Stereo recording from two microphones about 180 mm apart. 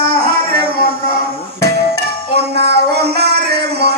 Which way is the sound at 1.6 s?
65° right (ahead or behind).